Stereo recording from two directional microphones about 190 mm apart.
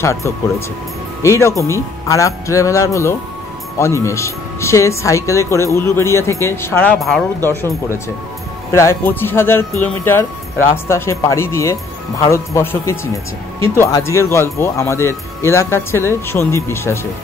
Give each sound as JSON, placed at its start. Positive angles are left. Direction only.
{"t": 0.0, "sound": "speech", "side_deg": 15}
{"t": 7.4, "sound": "speech", "side_deg": 15}